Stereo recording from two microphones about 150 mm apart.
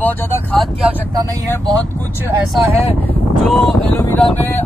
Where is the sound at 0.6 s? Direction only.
5° right (ahead or behind).